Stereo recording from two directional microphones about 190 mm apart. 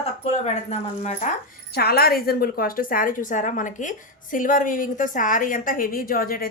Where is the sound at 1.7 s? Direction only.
55° left (ahead or behind).